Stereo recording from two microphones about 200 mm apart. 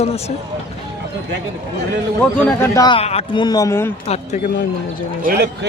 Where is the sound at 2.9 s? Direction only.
30° left (ahead or behind); by 3.9 s 15° left (ahead or behind).